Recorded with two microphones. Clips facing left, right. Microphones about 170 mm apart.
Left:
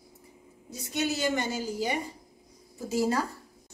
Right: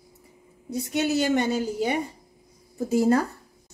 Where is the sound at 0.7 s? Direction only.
60° right (ahead or behind).